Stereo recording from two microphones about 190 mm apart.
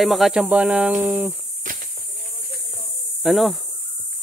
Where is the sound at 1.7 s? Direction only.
45° right (ahead or behind).